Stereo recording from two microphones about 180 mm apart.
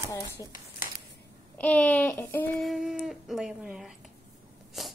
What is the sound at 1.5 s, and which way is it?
Speech, 5° left (ahead or behind).